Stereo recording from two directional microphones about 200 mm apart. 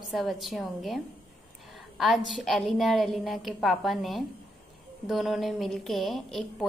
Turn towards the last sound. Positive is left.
turn(degrees=0)  # may be behind; listen again after turning